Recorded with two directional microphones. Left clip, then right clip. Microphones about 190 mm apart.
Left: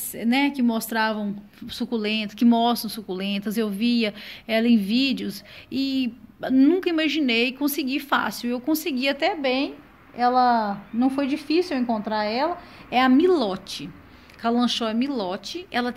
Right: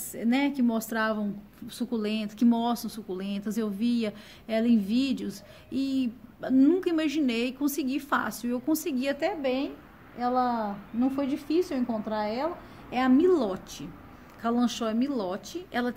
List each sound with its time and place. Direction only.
0.1 s a woman's voice: 25° left (ahead or behind)